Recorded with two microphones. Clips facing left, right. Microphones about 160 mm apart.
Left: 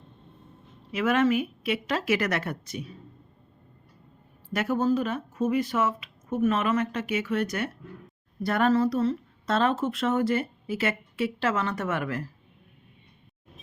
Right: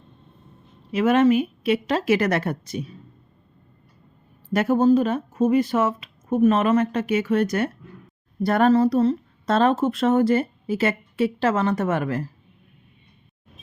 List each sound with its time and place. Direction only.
0.9 s speech: 30° right (ahead or behind)
4.5 s a woman's voice: 35° right (ahead or behind)